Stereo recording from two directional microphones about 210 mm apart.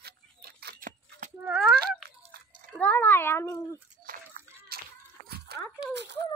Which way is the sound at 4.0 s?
45° right (ahead or behind).